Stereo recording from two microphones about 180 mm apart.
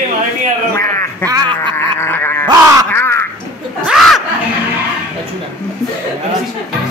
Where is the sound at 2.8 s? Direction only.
15° left (ahead or behind).